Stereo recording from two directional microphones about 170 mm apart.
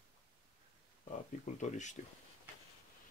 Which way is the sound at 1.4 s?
45° left (ahead or behind).